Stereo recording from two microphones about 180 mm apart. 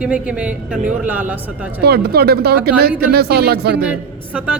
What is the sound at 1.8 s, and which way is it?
Speech, 65° right (ahead or behind).